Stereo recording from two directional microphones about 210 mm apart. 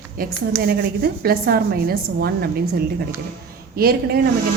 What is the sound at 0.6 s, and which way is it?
A woman's voice, 50° right (ahead or behind).